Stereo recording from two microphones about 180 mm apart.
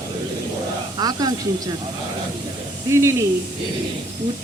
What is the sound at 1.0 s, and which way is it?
Speech, 20° right (ahead or behind).